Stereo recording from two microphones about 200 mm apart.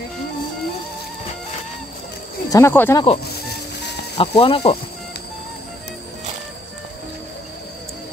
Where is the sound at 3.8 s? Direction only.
60° left (ahead or behind).